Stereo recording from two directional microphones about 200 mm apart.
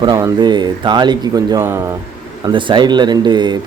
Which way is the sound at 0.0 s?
20° right (ahead or behind).